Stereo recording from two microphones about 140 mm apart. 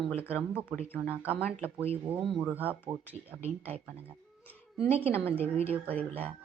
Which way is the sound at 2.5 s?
10° right (ahead or behind).